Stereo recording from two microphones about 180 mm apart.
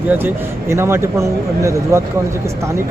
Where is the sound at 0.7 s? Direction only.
15° right (ahead or behind).